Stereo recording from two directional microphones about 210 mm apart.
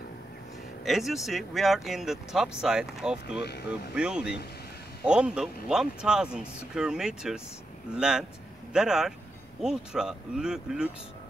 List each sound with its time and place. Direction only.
0.8 s speech: centre (ahead or behind)
3.4 s speech: 50° left (ahead or behind)
3.9 s speech: 5° right (ahead or behind)